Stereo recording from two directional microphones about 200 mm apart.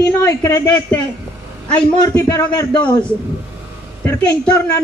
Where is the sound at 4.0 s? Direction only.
5° left (ahead or behind).